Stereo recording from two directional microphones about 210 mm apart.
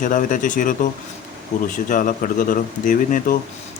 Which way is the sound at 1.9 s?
40° left (ahead or behind).